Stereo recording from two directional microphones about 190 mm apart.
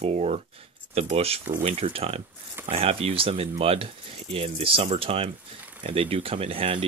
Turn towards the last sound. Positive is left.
turn(degrees=-30)  # may be behind; listen again after turning